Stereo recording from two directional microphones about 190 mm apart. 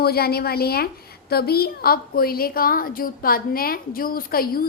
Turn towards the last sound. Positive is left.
turn(degrees=50)  # may be behind; listen again after turning